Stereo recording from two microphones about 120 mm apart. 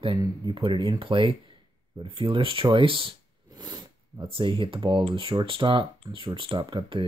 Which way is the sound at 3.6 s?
35° right (ahead or behind).